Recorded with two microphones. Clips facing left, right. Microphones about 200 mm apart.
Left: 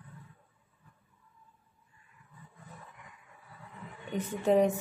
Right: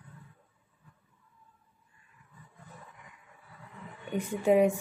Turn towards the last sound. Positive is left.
turn(degrees=-10)  # may be behind; listen again after turning